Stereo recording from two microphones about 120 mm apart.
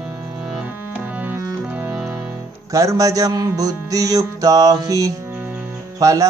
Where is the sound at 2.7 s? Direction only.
25° right (ahead or behind).